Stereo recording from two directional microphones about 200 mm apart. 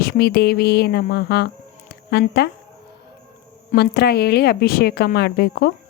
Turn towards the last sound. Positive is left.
turn(degrees=50)  # may be behind; listen again after turning